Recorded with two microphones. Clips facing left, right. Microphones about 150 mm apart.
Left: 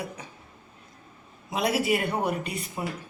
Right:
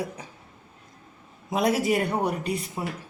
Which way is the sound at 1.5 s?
45° right (ahead or behind).